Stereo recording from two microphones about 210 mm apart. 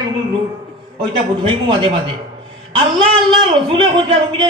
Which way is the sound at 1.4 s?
25° right (ahead or behind).